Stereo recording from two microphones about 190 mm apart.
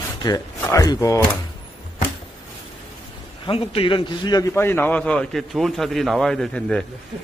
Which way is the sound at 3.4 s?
30° left (ahead or behind).